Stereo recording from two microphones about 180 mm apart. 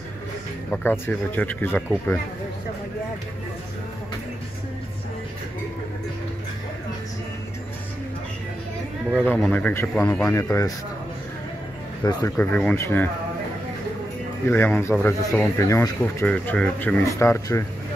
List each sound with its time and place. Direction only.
0.7 s speech: 10° left (ahead or behind)
9.3 s speech: 10° left (ahead or behind)
12.0 s speech: 20° left (ahead or behind)
12.4 s speech: 10° left (ahead or behind)
14.4 s speech: 10° left (ahead or behind)